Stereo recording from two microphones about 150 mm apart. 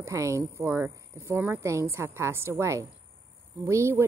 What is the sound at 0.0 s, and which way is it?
Speech, 20° right (ahead or behind).